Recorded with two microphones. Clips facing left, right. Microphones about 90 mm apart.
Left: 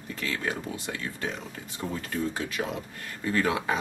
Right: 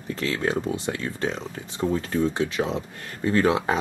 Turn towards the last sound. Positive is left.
turn(degrees=-30)  # may be behind; listen again after turning